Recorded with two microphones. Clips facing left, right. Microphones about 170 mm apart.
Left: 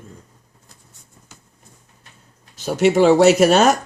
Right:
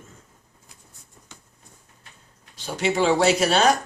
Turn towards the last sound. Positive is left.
turn(degrees=45)  # may be behind; listen again after turning